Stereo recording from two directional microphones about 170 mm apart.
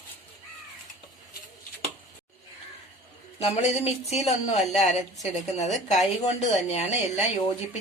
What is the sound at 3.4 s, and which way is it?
A woman's voice, 40° left (ahead or behind).